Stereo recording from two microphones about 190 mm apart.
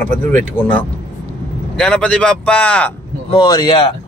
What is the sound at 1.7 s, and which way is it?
Speech, 5° left (ahead or behind).